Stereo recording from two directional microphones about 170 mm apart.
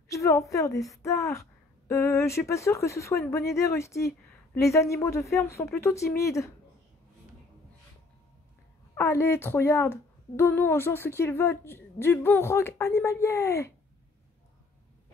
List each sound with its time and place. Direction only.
0.1 s a woman's voice: 20° left (ahead or behind)
8.9 s speech: 15° left (ahead or behind)